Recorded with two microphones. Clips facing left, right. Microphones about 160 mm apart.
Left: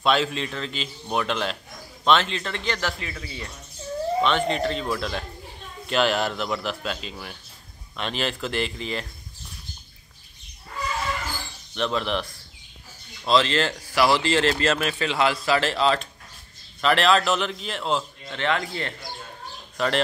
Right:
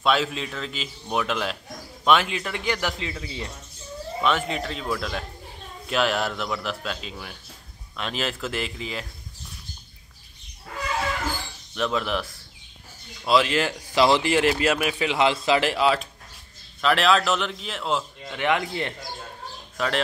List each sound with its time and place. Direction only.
0.0 s a man's voice: centre (ahead or behind); by 3.4 s 20° right (ahead or behind)
4.2 s a man's voice: 5° right (ahead or behind)
11.7 s a man's voice: 5° right (ahead or behind)
18.4 s a man's voice: 15° right (ahead or behind)